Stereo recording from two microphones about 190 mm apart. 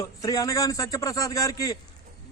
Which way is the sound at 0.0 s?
20° left (ahead or behind).